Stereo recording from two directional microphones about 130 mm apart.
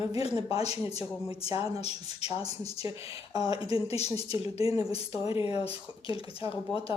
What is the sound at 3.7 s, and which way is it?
Speech, 55° left (ahead or behind).